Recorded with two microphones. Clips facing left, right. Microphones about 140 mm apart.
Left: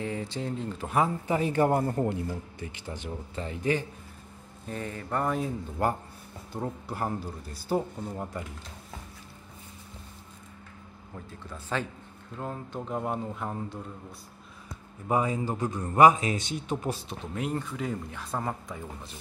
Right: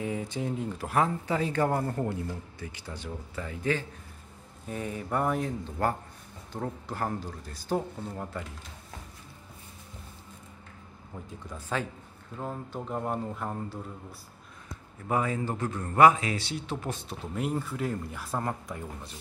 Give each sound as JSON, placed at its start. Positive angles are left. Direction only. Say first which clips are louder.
{"t": 0.0, "sound": "speech", "louder": "right 1 dB", "side_deg": -10}
{"t": 1.2, "sound": "speech", "louder": "left 2 dB", "side_deg": 15}
{"t": 4.6, "sound": "speech", "louder": "right 1 dB", "side_deg": -10}
{"t": 5.4, "sound": "speech", "louder": "left 1 dB", "side_deg": 15}
{"t": 11.4, "sound": "speech", "louder": "even", "side_deg": -10}
{"t": 12.4, "sound": "speech", "louder": "even", "side_deg": 0}
{"t": 15.0, "sound": "speech", "louder": "left 2 dB", "side_deg": 20}
{"t": 17.1, "sound": "speech", "louder": "even", "side_deg": -5}